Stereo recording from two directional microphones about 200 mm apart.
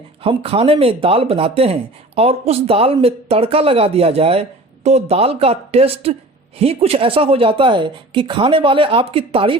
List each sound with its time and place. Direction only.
0.2 s speech: 30° right (ahead or behind)